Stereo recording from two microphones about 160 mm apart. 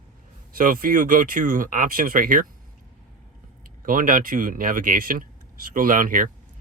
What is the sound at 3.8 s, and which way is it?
Speech, 60° right (ahead or behind).